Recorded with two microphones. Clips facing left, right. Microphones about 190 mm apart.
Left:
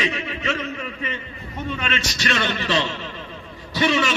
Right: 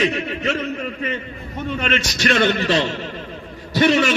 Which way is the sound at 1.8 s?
50° right (ahead or behind).